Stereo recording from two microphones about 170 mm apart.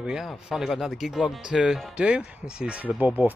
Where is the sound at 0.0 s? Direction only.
5° right (ahead or behind).